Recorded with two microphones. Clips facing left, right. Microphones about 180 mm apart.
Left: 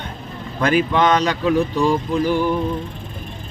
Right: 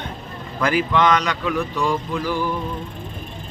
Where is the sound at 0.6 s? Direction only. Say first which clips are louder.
Left 2 dB; 25° left (ahead or behind).